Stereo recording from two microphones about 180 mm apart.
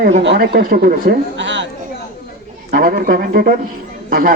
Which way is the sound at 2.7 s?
55° right (ahead or behind).